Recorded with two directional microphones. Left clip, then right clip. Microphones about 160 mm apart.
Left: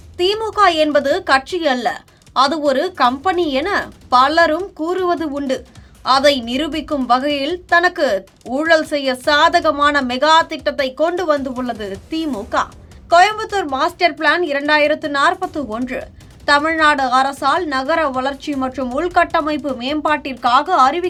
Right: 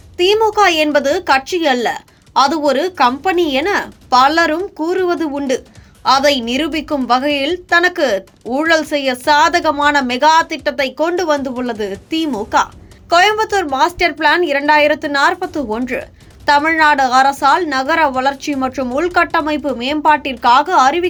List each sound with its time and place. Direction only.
0.2 s a woman's voice: 15° right (ahead or behind)